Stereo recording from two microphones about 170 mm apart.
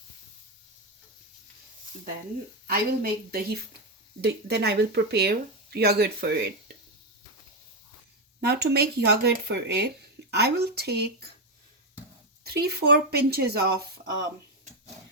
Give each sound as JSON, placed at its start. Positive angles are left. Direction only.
{"t": 2.6, "sound": "a woman's voice", "side_deg": -60}
{"t": 8.4, "sound": "speech", "side_deg": -70}
{"t": 12.5, "sound": "speech", "side_deg": -75}